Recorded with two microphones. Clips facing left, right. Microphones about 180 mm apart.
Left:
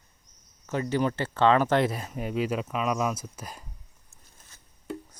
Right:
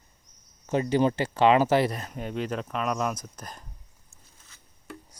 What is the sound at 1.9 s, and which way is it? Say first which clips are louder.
Speech: left 2 dB; 5° left (ahead or behind).